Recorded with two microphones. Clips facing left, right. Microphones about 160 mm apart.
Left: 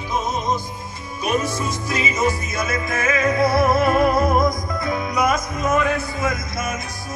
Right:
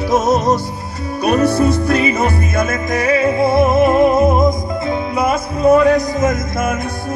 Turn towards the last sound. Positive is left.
turn(degrees=-50)  # may be behind; listen again after turning